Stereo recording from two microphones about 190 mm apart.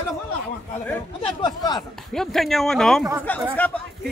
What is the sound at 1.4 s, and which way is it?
Speech, 20° left (ahead or behind).